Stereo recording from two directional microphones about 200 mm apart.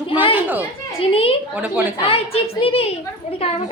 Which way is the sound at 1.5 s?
5° right (ahead or behind).